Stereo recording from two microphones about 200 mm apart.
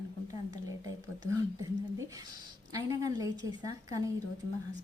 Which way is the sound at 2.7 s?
15° right (ahead or behind).